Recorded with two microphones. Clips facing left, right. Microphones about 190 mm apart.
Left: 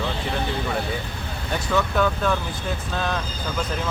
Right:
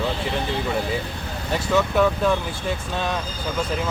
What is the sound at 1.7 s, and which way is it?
Speech, 5° right (ahead or behind).